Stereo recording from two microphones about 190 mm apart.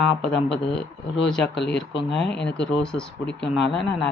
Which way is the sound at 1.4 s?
65° left (ahead or behind).